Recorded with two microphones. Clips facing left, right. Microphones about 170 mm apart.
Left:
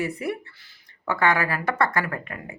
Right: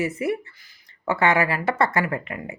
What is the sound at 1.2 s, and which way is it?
Speech, 25° right (ahead or behind).